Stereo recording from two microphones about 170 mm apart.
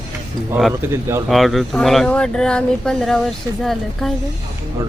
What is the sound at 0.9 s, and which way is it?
Speech, 15° right (ahead or behind).